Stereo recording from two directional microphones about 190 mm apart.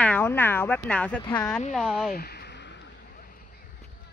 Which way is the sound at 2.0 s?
55° left (ahead or behind).